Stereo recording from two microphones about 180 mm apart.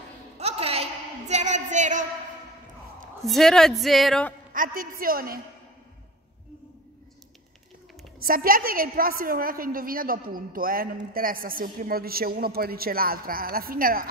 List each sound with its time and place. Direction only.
0.4 s a sound: 35° right (ahead or behind)
3.3 s a woman's voice: centre (ahead or behind)
4.6 s a woman's voice: 50° right (ahead or behind)
8.2 s a woman's voice: 55° right (ahead or behind)